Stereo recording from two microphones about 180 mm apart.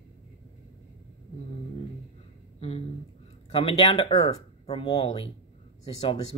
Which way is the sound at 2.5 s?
35° left (ahead or behind).